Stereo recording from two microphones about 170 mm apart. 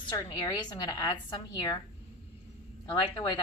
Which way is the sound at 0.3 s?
25° left (ahead or behind).